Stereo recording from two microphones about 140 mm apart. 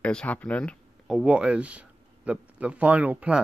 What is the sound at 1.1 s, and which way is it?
Speech, 5° right (ahead or behind).